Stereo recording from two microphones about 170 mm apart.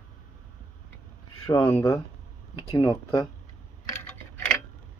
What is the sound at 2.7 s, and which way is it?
Speech, 25° left (ahead or behind).